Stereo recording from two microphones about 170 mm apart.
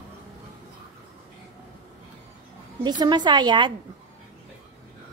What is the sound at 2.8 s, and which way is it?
Speech, 25° right (ahead or behind).